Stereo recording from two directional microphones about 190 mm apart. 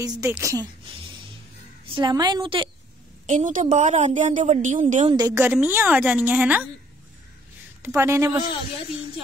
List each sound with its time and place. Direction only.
0.0 s a woman's voice: 20° right (ahead or behind)
2.0 s a woman's voice: 20° right (ahead or behind)
3.3 s a woman's voice: 40° right (ahead or behind)
5.0 s a woman's voice: 20° right (ahead or behind)
8.0 s a woman's voice: 15° right (ahead or behind)